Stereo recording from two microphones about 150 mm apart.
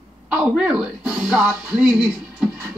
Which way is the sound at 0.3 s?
10° right (ahead or behind).